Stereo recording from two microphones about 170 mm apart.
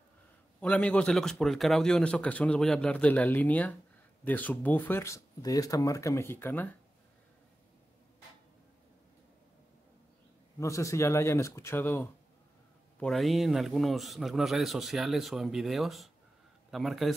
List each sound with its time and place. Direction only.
0.6 s a man's voice: 5° left (ahead or behind)
10.6 s speech: 20° left (ahead or behind)
13.0 s a man's voice: centre (ahead or behind)